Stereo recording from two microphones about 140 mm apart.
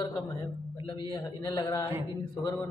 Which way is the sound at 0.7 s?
35° left (ahead or behind).